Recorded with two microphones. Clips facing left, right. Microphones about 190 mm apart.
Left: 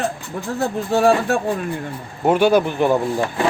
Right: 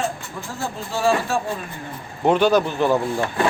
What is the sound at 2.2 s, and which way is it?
Speech, 10° left (ahead or behind).